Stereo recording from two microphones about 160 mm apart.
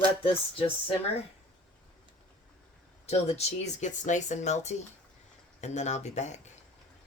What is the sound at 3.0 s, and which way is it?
Speech, 40° left (ahead or behind).